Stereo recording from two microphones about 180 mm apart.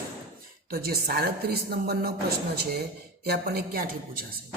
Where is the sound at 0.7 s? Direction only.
60° right (ahead or behind).